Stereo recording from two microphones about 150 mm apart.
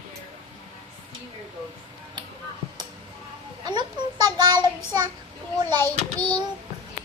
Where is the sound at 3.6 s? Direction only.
30° right (ahead or behind).